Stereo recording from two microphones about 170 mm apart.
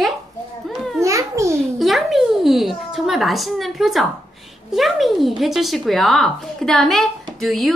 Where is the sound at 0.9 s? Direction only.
20° right (ahead or behind).